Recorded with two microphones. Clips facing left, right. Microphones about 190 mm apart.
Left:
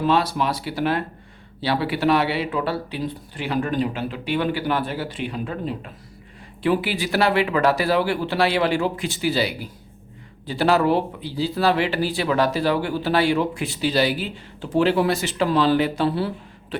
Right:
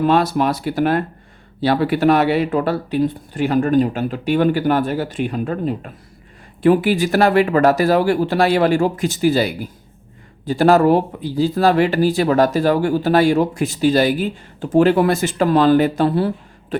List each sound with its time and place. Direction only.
0.0 s speech: 50° right (ahead or behind)